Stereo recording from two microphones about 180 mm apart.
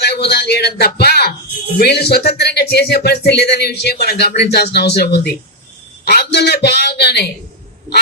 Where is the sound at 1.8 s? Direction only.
65° left (ahead or behind).